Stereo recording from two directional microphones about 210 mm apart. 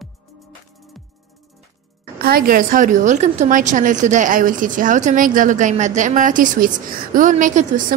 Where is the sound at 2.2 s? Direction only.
45° right (ahead or behind).